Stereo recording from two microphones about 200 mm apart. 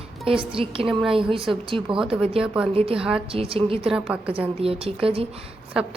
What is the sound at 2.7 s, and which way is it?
A woman's voice, 30° right (ahead or behind).